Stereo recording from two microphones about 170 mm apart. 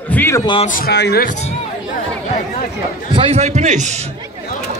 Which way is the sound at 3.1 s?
35° right (ahead or behind).